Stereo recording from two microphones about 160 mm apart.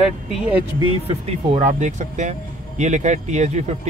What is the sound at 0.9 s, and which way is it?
Speech, 35° right (ahead or behind).